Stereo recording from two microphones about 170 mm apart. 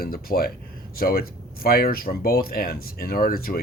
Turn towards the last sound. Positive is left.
turn(degrees=60)  # may be behind; listen again after turning